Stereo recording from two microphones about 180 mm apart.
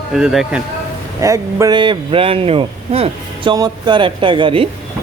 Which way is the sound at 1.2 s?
15° right (ahead or behind).